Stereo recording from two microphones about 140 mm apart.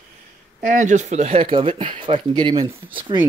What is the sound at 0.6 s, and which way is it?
Speech, 65° right (ahead or behind).